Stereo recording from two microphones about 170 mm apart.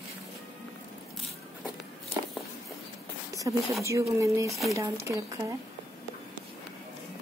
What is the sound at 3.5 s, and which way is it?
Speech, 20° right (ahead or behind).